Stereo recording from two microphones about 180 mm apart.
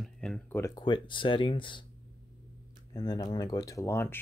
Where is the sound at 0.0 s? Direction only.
Centre (ahead or behind).